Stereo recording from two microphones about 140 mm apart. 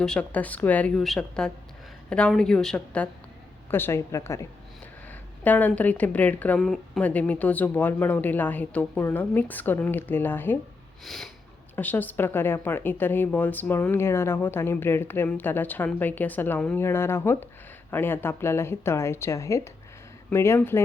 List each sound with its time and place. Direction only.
0.0 s a woman's voice: 10° left (ahead or behind)
11.0 s snort: centre (ahead or behind)
11.8 s speech: 10° left (ahead or behind)